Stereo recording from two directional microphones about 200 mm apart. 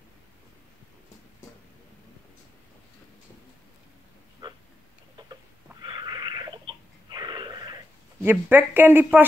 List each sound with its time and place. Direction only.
4.4 s oink: 20° right (ahead or behind)
5.3 s a sound: 20° right (ahead or behind)
8.3 s speech: 10° right (ahead or behind)